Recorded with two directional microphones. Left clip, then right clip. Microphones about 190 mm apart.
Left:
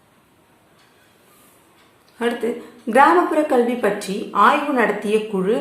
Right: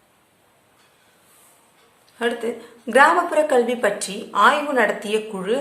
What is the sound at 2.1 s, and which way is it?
A woman's voice, 5° left (ahead or behind).